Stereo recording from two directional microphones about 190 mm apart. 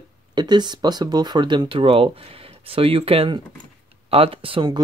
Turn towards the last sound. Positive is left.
turn(degrees=-25)  # may be behind; listen again after turning